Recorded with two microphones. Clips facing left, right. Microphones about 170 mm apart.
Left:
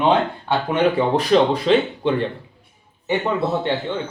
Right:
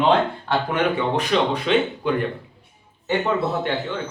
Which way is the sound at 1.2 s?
35° left (ahead or behind).